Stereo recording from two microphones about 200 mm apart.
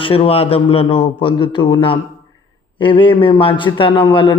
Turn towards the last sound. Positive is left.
turn(degrees=25)  # may be behind; listen again after turning